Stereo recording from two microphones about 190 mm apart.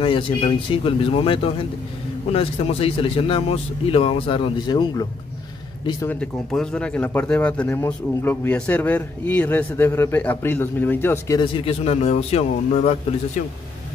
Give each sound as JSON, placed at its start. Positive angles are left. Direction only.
{"t": 0.0, "sound": "a man's voice", "side_deg": 25}
{"t": 5.9, "sound": "speech", "side_deg": 10}
{"t": 11.3, "sound": "speech", "side_deg": 25}